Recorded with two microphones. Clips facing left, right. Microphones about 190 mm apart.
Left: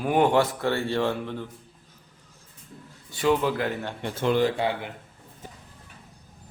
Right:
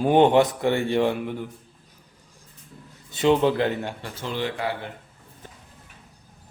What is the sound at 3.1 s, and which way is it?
Speech, 20° right (ahead or behind).